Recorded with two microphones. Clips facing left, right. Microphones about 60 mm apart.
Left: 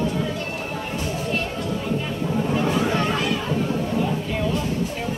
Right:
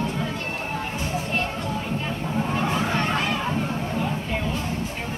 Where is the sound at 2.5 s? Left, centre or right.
Centre.